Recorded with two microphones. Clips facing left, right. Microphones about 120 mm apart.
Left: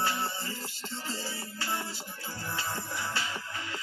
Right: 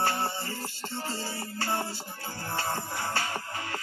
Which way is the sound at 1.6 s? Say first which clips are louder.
Right 5 dB; 55° right (ahead or behind).